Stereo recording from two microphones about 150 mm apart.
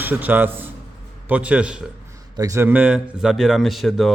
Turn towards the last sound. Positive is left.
turn(degrees=0)  # may be behind; listen again after turning